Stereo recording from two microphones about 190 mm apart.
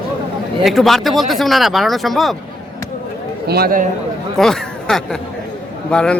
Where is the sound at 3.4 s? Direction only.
55° right (ahead or behind).